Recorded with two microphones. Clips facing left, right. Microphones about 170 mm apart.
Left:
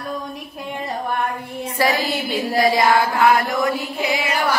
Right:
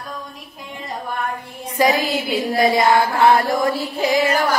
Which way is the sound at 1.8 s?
15° right (ahead or behind).